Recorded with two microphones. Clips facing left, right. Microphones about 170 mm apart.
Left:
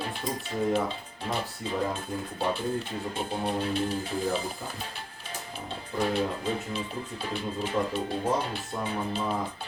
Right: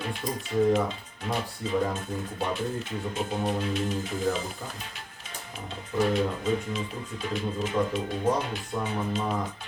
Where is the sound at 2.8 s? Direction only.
30° left (ahead or behind).